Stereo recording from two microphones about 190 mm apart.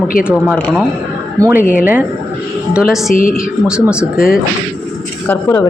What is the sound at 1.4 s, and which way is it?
Speech, 15° right (ahead or behind).